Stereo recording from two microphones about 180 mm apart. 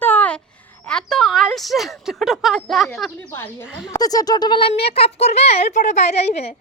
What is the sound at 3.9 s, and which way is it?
A woman's voice, 20° left (ahead or behind).